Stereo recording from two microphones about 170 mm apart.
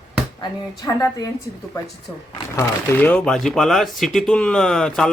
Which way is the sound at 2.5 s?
10° left (ahead or behind).